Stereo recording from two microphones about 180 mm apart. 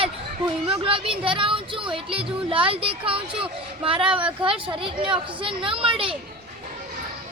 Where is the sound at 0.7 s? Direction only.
30° right (ahead or behind).